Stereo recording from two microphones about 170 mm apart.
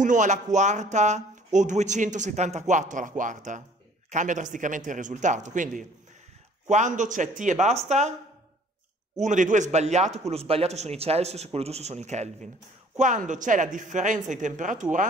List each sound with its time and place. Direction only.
0.0 s speech: 45° right (ahead or behind)
6.7 s speech: 45° right (ahead or behind)
9.2 s a man's voice: 45° right (ahead or behind)